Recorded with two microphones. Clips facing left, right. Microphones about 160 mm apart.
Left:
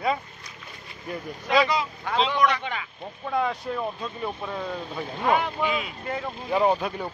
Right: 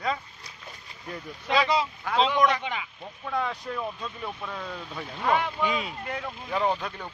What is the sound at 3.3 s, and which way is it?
Speech, 5° left (ahead or behind).